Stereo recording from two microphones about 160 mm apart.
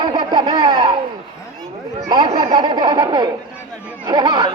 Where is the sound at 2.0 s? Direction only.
25° right (ahead or behind).